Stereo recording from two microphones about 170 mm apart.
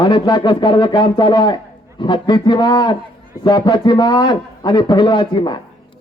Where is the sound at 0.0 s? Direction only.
25° left (ahead or behind).